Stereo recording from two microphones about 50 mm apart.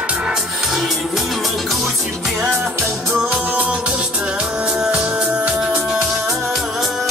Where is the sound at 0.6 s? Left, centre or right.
Centre.